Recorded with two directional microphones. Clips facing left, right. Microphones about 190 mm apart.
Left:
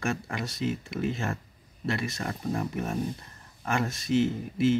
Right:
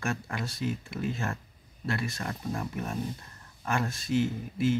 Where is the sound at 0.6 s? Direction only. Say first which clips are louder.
Left 4 dB; 20° left (ahead or behind).